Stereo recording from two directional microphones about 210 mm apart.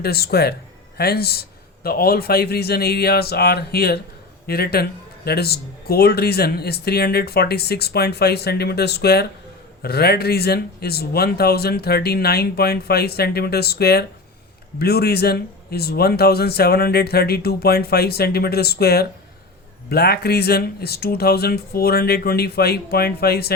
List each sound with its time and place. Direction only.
0.0 s speech: 50° left (ahead or behind)